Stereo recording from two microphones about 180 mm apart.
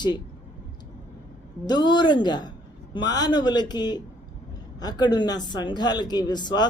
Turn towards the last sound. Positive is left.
turn(degrees=25)  # may be behind; listen again after turning